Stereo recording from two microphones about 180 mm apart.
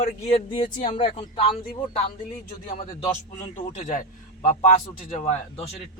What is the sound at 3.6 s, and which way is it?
Speech, 40° left (ahead or behind).